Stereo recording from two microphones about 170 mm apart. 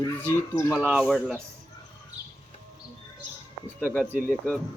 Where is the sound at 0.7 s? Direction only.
5° right (ahead or behind).